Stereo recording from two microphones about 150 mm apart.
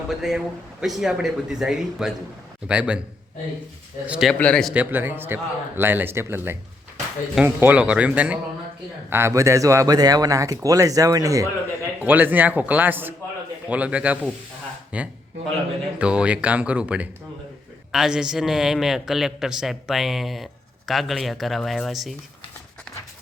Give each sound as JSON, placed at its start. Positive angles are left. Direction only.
{"t": 0.1, "sound": "a man's voice", "side_deg": 0}
{"t": 4.0, "sound": "a man's voice", "side_deg": -10}
{"t": 4.3, "sound": "a man's voice", "side_deg": 5}
{"t": 4.7, "sound": "a man's voice", "side_deg": -10}
{"t": 11.9, "sound": "a man's voice", "side_deg": -10}